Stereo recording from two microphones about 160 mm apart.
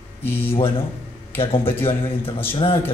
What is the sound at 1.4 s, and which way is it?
Speech, 35° left (ahead or behind).